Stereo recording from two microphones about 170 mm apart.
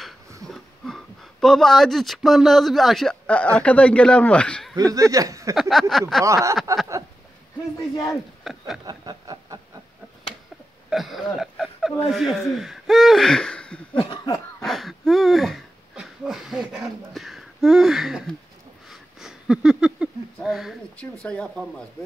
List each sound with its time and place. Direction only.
0.5 s speech: centre (ahead or behind)
5.1 s speech: 20° right (ahead or behind)
5.6 s speech: centre (ahead or behind)
6.2 s a sound: 20° right (ahead or behind)
7.9 s cough: 20° left (ahead or behind)
8.5 s speech: centre (ahead or behind)
8.8 s a sound: 25° right (ahead or behind)
10.9 s a sound: centre (ahead or behind)
12.0 s speech: centre (ahead or behind)
13.9 s cough: 30° left (ahead or behind)
14.6 s speech: centre (ahead or behind)